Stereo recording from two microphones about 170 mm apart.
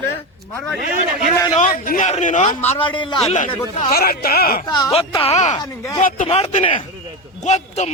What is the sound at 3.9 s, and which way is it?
Speech, 65° left (ahead or behind).